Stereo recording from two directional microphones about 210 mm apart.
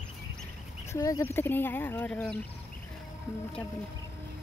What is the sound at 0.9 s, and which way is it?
Speech, 15° left (ahead or behind).